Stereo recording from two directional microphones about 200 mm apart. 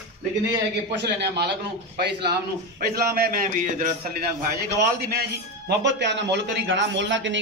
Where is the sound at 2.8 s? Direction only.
45° right (ahead or behind).